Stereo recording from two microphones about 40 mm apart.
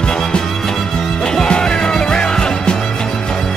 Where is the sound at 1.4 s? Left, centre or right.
Left.